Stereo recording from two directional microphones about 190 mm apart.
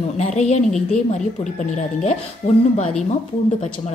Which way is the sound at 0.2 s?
35° left (ahead or behind).